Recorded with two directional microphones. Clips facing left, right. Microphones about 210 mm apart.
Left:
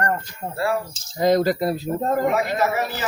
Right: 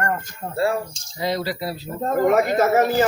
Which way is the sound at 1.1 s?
45° left (ahead or behind).